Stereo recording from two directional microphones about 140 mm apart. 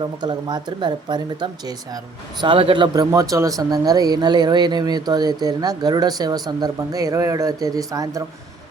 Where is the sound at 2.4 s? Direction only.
35° right (ahead or behind).